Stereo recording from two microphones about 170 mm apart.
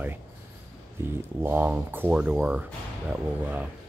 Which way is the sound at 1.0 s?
10° right (ahead or behind).